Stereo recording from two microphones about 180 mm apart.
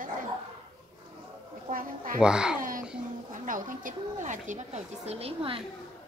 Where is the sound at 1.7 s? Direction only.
50° right (ahead or behind).